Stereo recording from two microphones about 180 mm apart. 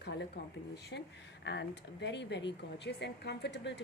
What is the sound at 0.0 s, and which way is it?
Speech, 70° left (ahead or behind).